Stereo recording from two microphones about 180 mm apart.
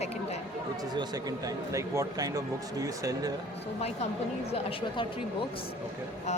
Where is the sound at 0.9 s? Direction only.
20° right (ahead or behind).